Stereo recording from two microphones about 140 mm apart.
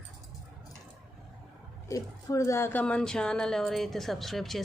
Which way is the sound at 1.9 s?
20° left (ahead or behind).